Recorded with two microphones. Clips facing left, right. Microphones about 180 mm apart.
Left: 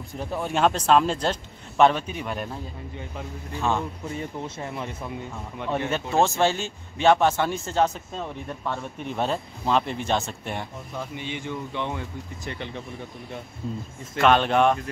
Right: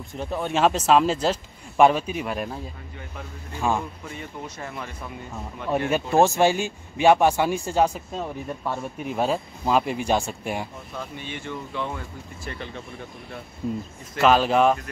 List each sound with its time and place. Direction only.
0.1 s a man's voice: centre (ahead or behind)
4.6 s speech: 25° left (ahead or behind)
5.7 s speech: 10° right (ahead or behind)
11.0 s speech: 15° left (ahead or behind)
14.1 s a man's voice: 5° right (ahead or behind)